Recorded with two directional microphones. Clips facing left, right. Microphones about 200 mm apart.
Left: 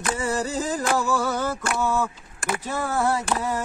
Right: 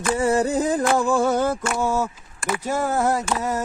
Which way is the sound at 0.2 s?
60° right (ahead or behind).